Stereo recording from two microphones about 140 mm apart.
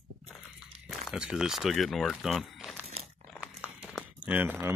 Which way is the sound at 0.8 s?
5° right (ahead or behind).